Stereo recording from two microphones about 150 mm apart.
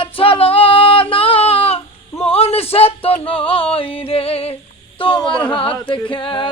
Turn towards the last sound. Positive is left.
turn(degrees=35)  # may be behind; listen again after turning